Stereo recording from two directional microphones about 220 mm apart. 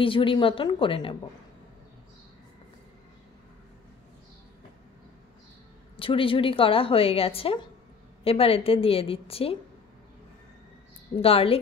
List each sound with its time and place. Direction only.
0.0 s a woman's voice: 25° left (ahead or behind)
5.9 s a woman's voice: 25° left (ahead or behind)
11.1 s a woman's voice: 25° left (ahead or behind)